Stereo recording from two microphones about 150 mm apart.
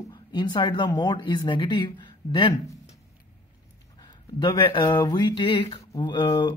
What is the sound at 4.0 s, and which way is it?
Speech, 25° left (ahead or behind).